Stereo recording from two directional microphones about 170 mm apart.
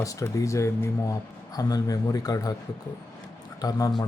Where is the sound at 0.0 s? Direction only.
20° left (ahead or behind).